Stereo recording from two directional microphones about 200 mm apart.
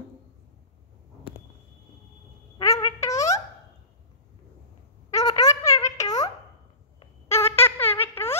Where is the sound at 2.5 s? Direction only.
15° left (ahead or behind).